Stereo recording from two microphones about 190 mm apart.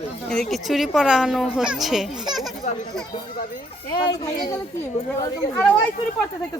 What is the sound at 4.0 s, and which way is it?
Speech, 25° left (ahead or behind).